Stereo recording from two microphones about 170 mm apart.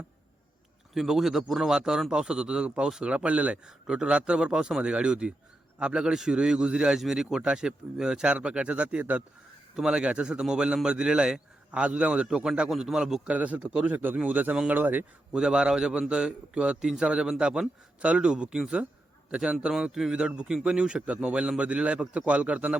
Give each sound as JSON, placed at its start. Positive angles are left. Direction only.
{"t": 0.9, "sound": "a man's voice", "side_deg": 0}